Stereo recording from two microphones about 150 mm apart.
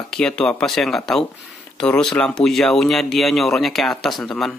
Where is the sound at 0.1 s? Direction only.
5° left (ahead or behind).